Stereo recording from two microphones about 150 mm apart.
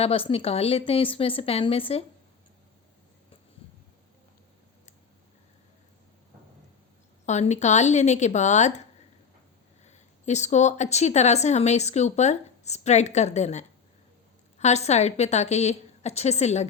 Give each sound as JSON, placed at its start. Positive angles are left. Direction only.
{"t": 0.0, "sound": "a woman's voice", "side_deg": 40}
{"t": 7.3, "sound": "speech", "side_deg": 50}